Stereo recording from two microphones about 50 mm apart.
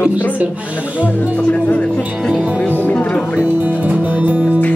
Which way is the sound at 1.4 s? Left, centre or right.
Left.